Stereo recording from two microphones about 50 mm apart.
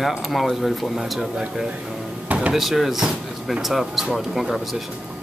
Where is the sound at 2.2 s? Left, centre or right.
Right.